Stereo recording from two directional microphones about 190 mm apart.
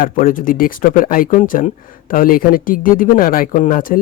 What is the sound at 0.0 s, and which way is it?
Speech, 45° left (ahead or behind).